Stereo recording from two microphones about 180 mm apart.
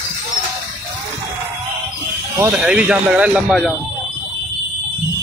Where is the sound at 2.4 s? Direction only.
5° right (ahead or behind).